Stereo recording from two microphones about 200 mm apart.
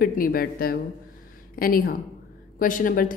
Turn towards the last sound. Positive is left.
turn(degrees=45)  # may be behind; listen again after turning